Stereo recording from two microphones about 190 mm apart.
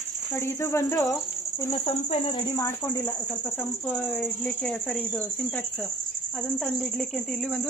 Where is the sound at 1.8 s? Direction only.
30° left (ahead or behind).